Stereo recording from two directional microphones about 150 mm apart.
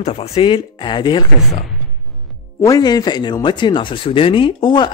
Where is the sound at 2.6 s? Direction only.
25° left (ahead or behind).